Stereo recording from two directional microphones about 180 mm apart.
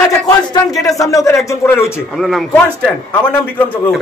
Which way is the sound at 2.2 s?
Centre (ahead or behind).